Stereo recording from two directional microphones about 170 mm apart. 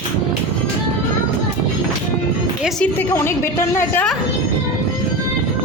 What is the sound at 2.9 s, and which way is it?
A woman's voice, 15° left (ahead or behind).